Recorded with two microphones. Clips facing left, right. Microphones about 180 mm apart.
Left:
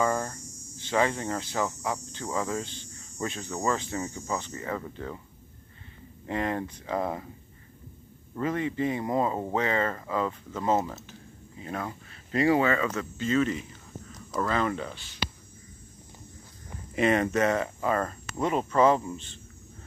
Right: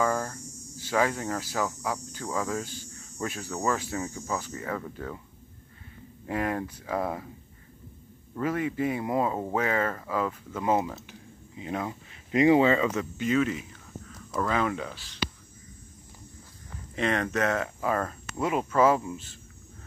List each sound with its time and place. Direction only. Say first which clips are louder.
0.0 s hum: even; centre (ahead or behind)
0.7 s speech: even; 5° right (ahead or behind)
2.6 s speech: right 1 dB; 10° right (ahead or behind)
6.2 s speech: even; 5° right (ahead or behind)
8.4 s speech: even; 5° right (ahead or behind)
13.0 s speech: even; 10° right (ahead or behind)
16.9 s speech: left 4 dB; 5° left (ahead or behind)